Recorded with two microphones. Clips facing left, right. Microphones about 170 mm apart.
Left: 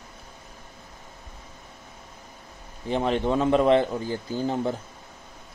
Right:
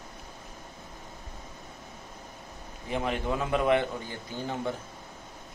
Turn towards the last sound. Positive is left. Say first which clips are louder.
# left 8 dB
turn(degrees=35)  # may be behind; listen again after turning